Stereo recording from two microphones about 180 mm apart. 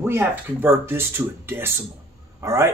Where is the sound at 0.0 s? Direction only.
15° right (ahead or behind).